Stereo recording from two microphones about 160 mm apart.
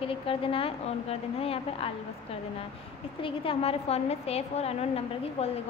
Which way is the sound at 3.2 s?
35° left (ahead or behind).